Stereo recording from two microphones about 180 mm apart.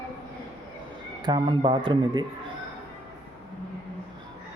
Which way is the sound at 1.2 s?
25° right (ahead or behind).